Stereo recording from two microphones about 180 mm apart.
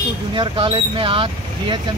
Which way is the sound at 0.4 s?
30° right (ahead or behind).